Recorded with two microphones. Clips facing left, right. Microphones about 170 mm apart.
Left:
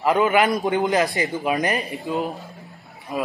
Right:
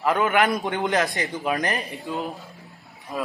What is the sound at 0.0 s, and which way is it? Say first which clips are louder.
A man's voice: left 3 dB; 5° left (ahead or behind).